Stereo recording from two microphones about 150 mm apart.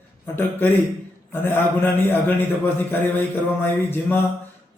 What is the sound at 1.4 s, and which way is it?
A man's voice, 15° left (ahead or behind).